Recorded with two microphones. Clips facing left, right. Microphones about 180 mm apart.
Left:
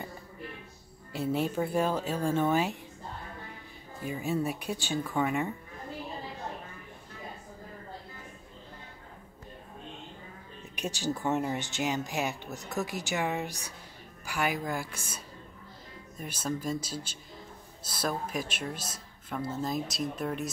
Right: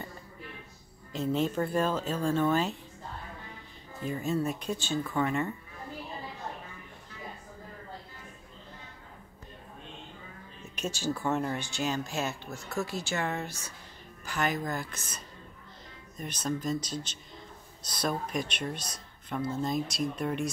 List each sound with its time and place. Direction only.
1.1 s speech: 10° left (ahead or behind)
4.0 s speech: 10° left (ahead or behind)
10.8 s speech: 15° left (ahead or behind)